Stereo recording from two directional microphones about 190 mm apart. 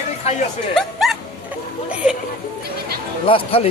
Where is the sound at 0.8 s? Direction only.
Centre (ahead or behind).